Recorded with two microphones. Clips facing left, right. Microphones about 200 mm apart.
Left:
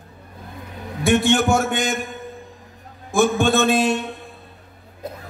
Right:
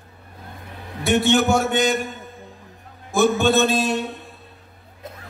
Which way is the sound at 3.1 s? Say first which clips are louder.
Even; 50° left (ahead or behind).